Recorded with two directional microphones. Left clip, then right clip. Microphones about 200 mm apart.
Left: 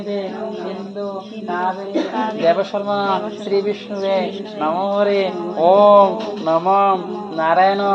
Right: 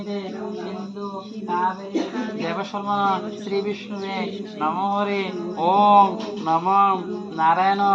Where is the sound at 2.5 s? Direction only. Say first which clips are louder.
Left 9 dB; 45° right (ahead or behind).